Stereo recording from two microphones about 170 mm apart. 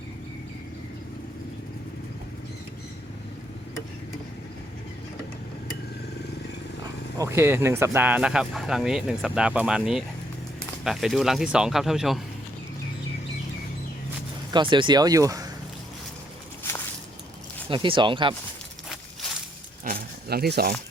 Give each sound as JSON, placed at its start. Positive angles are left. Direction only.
{"t": 7.2, "sound": "speech", "side_deg": -15}
{"t": 14.5, "sound": "speech", "side_deg": -30}
{"t": 17.7, "sound": "speech", "side_deg": -30}
{"t": 19.8, "sound": "a sound", "side_deg": -60}